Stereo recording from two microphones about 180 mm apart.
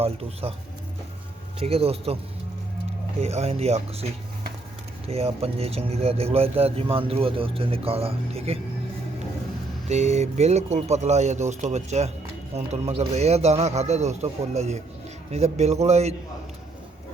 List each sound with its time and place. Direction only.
0.0 s speech: 35° right (ahead or behind)
1.5 s speech: 35° right (ahead or behind)
3.2 s speech: 35° right (ahead or behind)
5.0 s speech: 35° right (ahead or behind)
9.9 s speech: 40° right (ahead or behind)